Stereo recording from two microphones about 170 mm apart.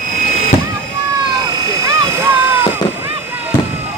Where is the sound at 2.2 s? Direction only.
10° right (ahead or behind).